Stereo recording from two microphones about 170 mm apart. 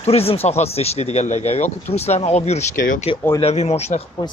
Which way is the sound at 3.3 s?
40° left (ahead or behind).